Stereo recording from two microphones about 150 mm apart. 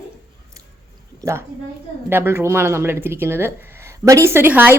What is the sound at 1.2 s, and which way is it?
A woman's voice, 20° right (ahead or behind).